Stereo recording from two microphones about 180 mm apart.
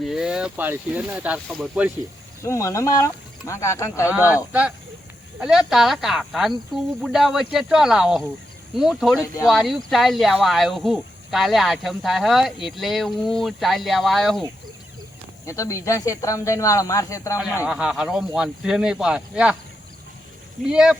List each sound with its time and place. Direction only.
0.0 s speech: 5° right (ahead or behind)
2.4 s speech: 15° left (ahead or behind)
4.1 s speech: 10° right (ahead or behind)
5.4 s speech: 5° right (ahead or behind)
9.2 s speech: 20° left (ahead or behind)
9.5 s speech: centre (ahead or behind)
15.4 s speech: 15° left (ahead or behind)
17.7 s speech: 5° right (ahead or behind)
20.7 s speech: centre (ahead or behind)